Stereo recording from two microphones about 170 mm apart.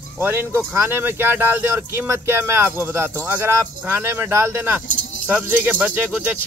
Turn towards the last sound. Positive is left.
turn(degrees=-10)  # may be behind; listen again after turning